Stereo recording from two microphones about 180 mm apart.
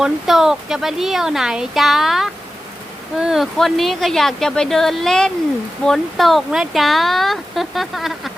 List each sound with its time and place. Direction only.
0.0 s speech: centre (ahead or behind)